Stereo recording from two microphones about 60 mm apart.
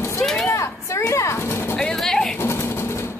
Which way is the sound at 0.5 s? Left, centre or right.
Left.